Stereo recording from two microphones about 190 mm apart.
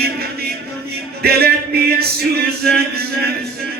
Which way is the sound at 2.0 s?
55° right (ahead or behind).